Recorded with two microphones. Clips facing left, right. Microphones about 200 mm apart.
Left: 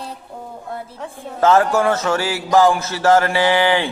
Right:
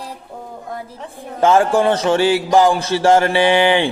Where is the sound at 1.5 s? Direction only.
30° right (ahead or behind).